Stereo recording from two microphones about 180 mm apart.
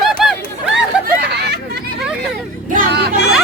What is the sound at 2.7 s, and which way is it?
Music, 50° right (ahead or behind).